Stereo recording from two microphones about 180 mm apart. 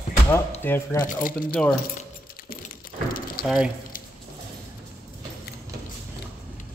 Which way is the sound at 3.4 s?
5° right (ahead or behind).